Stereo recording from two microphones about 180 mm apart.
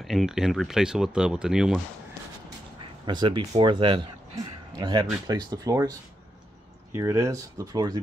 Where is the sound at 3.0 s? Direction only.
25° right (ahead or behind).